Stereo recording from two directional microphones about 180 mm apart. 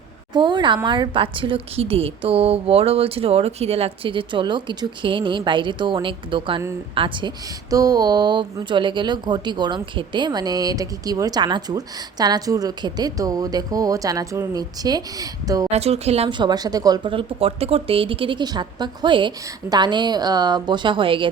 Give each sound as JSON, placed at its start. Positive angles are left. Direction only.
{"t": 0.3, "sound": "a woman's voice", "side_deg": -25}
{"t": 15.7, "sound": "speech", "side_deg": -35}